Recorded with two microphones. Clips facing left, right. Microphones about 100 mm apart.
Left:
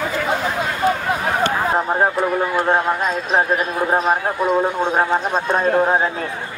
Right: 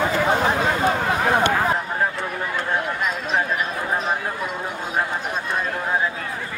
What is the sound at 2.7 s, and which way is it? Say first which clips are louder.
A man's voice: left 6 dB; 35° left (ahead or behind).